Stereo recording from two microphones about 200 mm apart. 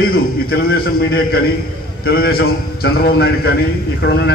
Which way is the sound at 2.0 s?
50° left (ahead or behind).